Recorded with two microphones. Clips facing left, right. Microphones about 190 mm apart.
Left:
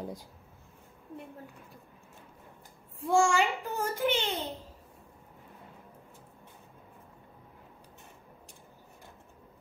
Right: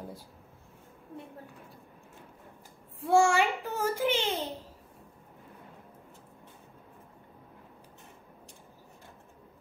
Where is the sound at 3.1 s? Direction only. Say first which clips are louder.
Right 2 dB; 5° right (ahead or behind).